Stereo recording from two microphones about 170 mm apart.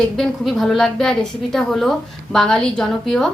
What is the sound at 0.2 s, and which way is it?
A woman's voice, centre (ahead or behind).